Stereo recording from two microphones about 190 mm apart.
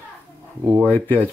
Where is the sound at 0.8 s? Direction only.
10° left (ahead or behind).